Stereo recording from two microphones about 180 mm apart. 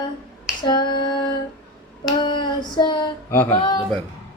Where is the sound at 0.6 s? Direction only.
25° left (ahead or behind).